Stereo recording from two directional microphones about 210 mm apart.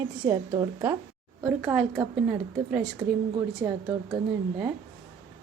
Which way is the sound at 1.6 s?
5° right (ahead or behind).